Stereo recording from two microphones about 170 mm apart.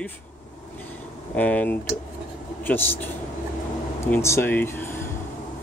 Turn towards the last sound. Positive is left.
turn(degrees=15)  # may be behind; listen again after turning